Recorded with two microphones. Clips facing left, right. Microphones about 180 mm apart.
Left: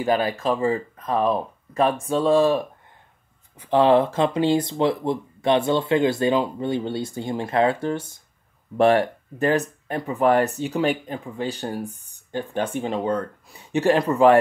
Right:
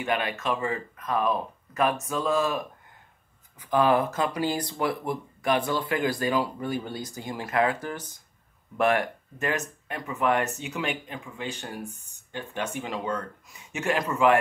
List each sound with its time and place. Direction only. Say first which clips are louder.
0.0 s speech: left 6 dB; 35° left (ahead or behind)